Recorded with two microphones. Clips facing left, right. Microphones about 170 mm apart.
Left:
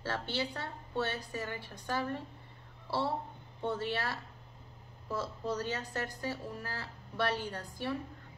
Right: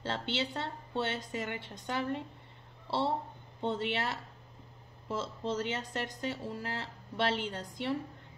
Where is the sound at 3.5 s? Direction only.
20° right (ahead or behind).